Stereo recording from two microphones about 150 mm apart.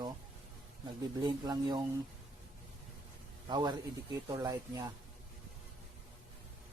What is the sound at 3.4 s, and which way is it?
Speech, 25° right (ahead or behind).